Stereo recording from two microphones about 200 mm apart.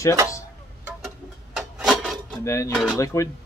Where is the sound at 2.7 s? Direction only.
Centre (ahead or behind).